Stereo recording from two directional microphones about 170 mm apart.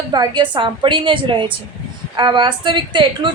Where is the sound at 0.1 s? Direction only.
25° right (ahead or behind).